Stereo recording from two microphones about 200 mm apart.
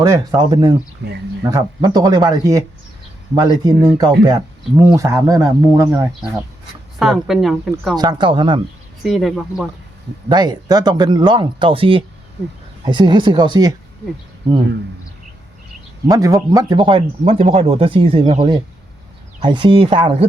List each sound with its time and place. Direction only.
0.0 s speech: 20° right (ahead or behind)
1.0 s speech: 55° right (ahead or behind)
1.5 s speech: 20° right (ahead or behind)
7.0 s speech: centre (ahead or behind)
7.9 s speech: 20° right (ahead or behind)
9.0 s speech: centre (ahead or behind)
10.2 s speech: 20° right (ahead or behind)
16.0 s speech: 15° right (ahead or behind)